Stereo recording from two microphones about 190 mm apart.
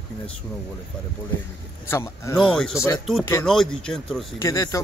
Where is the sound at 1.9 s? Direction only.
15° left (ahead or behind).